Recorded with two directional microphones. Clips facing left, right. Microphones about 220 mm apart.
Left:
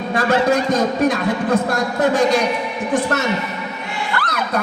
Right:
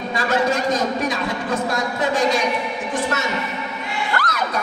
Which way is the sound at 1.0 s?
60° left (ahead or behind).